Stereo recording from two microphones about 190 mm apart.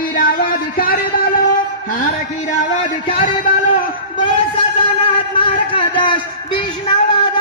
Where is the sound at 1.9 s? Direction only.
40° left (ahead or behind).